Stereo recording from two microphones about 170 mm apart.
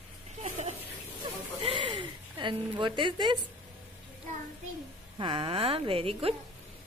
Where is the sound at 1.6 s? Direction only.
30° right (ahead or behind).